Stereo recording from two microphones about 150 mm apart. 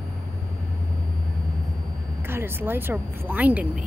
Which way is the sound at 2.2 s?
15° right (ahead or behind).